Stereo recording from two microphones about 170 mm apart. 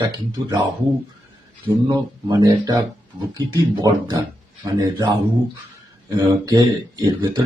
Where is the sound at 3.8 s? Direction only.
20° right (ahead or behind).